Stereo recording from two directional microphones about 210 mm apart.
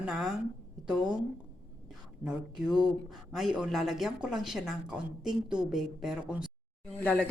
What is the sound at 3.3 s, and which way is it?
Speech, centre (ahead or behind).